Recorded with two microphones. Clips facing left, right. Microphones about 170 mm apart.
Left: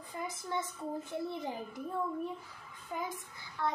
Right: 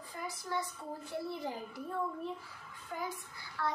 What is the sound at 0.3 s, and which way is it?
A child's voice, 20° left (ahead or behind).